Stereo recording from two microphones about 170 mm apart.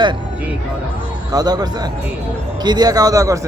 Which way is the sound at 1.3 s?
25° right (ahead or behind).